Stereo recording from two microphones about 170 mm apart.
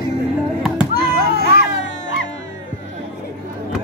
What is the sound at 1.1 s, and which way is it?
Children playing, 65° right (ahead or behind).